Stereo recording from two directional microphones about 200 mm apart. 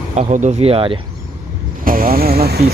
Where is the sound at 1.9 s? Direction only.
45° right (ahead or behind).